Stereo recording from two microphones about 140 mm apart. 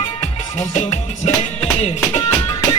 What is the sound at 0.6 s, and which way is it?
Music, 50° left (ahead or behind).